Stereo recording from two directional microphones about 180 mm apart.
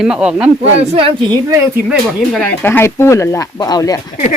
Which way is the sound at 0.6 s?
35° right (ahead or behind).